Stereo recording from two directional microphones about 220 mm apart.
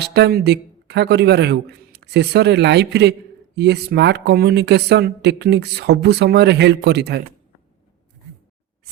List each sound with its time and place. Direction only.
0.0 s speech: 50° right (ahead or behind)